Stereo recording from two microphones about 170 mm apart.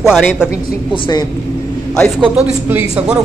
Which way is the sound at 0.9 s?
30° left (ahead or behind).